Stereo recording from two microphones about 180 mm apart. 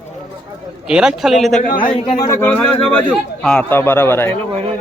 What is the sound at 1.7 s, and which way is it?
Speech, 50° left (ahead or behind).